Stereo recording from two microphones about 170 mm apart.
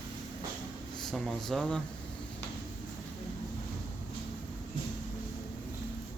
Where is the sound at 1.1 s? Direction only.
Centre (ahead or behind).